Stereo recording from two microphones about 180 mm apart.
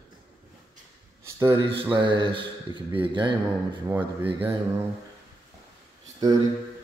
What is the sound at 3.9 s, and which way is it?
Speech, 10° right (ahead or behind).